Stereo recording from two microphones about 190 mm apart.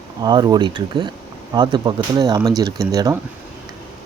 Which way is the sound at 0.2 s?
20° right (ahead or behind).